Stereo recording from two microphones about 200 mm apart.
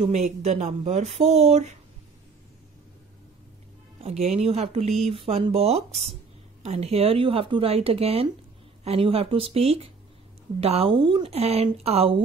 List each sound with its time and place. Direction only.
0.0 s speech: 35° right (ahead or behind)
4.0 s speech: 35° right (ahead or behind)